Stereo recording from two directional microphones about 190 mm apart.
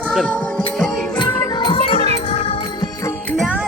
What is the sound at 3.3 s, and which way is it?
Music, 5° right (ahead or behind).